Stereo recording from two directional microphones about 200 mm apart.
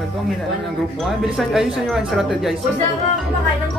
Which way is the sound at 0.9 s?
Centre (ahead or behind).